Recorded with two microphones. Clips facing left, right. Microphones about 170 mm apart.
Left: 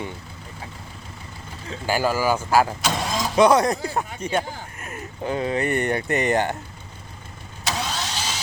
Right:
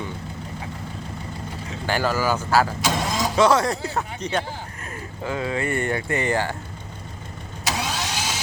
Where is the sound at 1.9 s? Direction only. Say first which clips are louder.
Left 1 dB; 10° left (ahead or behind).